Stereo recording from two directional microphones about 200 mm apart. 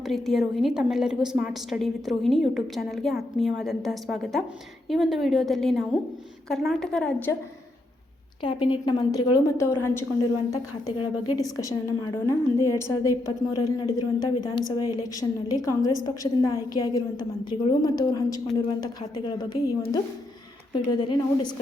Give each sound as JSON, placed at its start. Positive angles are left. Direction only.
{"t": 0.0, "sound": "a woman's voice", "side_deg": 0}
{"t": 8.4, "sound": "a woman's voice", "side_deg": 25}